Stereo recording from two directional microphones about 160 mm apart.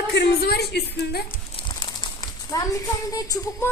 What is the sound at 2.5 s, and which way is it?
Speech, 20° left (ahead or behind).